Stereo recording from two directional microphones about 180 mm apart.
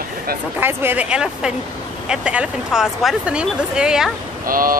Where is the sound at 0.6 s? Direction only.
10° right (ahead or behind).